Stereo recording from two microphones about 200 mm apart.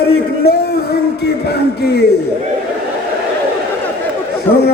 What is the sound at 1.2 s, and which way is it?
Speech, 55° left (ahead or behind).